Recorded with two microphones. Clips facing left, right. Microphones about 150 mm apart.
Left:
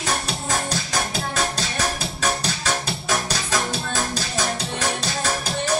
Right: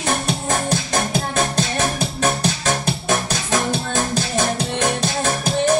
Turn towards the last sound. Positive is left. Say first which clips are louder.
# right 6 dB
turn(degrees=-50)  # may be behind; listen again after turning